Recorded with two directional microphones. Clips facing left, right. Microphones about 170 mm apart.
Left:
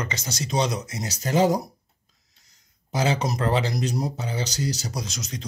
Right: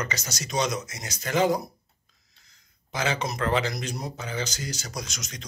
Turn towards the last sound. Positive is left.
turn(degrees=30)  # may be behind; listen again after turning